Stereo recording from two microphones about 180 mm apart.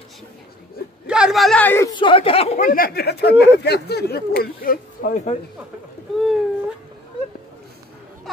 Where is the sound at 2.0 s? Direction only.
30° left (ahead or behind).